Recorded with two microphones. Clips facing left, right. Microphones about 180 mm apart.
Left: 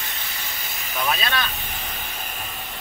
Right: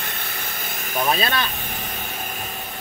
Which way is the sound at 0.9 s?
45° right (ahead or behind).